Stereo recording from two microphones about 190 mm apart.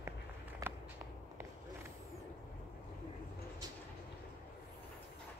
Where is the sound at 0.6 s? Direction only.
20° right (ahead or behind).